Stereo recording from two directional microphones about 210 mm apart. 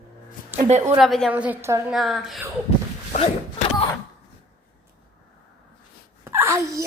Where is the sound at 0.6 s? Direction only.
35° right (ahead or behind).